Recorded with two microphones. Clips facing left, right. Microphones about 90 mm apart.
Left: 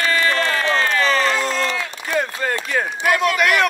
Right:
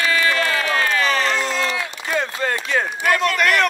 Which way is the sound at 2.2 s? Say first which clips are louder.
Left 1 dB; 90° right.